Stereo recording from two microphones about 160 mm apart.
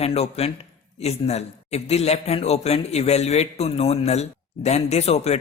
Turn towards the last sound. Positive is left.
turn(degrees=40)  # may be behind; listen again after turning